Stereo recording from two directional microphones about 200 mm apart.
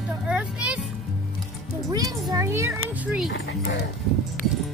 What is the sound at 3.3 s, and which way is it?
Speech, 60° left (ahead or behind).